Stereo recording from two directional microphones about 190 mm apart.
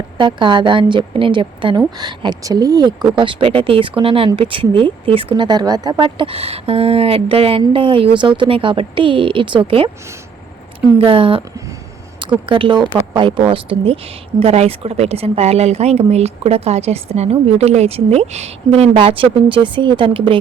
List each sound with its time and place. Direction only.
0.2 s speech: 25° right (ahead or behind)
12.5 s speech: 25° right (ahead or behind)